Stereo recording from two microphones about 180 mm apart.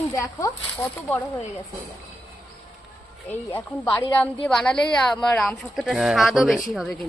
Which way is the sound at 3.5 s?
10° left (ahead or behind).